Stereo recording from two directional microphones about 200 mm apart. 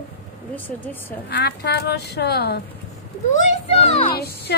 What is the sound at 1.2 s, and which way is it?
A woman's voice, 55° left (ahead or behind).